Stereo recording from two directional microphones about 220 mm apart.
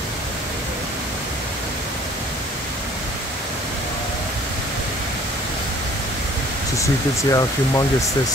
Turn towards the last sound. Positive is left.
turn(degrees=15)  # may be behind; listen again after turning